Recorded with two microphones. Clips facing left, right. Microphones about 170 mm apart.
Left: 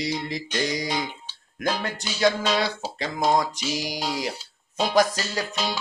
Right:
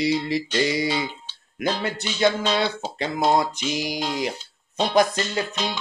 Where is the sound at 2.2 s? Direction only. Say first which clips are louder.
Right 1 dB; 10° left (ahead or behind).